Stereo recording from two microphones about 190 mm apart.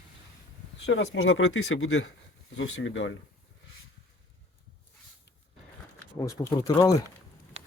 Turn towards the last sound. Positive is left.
turn(degrees=20)  # may be behind; listen again after turning